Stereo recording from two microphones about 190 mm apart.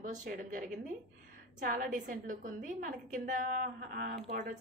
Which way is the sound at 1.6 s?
45° right (ahead or behind).